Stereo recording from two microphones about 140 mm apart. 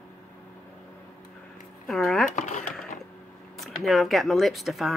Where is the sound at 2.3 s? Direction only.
60° left (ahead or behind).